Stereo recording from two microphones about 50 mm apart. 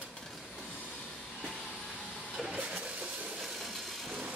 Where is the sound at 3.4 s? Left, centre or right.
Centre.